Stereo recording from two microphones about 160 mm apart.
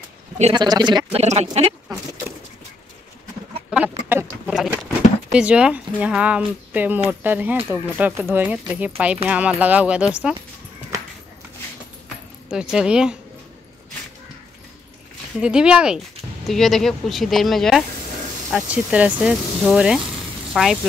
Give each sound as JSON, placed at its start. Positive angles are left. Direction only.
{"t": 0.5, "sound": "speech", "side_deg": -25}
{"t": 1.1, "sound": "speech", "side_deg": -45}
{"t": 1.9, "sound": "speech", "side_deg": -25}
{"t": 3.7, "sound": "a sound", "side_deg": -10}
{"t": 5.3, "sound": "speech", "side_deg": -5}
{"t": 12.4, "sound": "speech", "side_deg": -5}
{"t": 15.4, "sound": "speech", "side_deg": -5}